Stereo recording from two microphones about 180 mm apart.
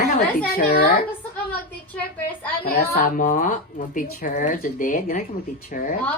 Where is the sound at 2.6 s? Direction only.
60° left (ahead or behind).